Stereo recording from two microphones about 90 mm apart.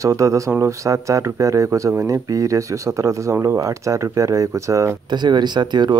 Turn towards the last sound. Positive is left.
turn(degrees=-55)  # may be behind; listen again after turning